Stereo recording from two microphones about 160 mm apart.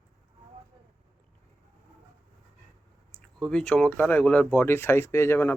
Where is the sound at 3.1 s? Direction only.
Centre (ahead or behind).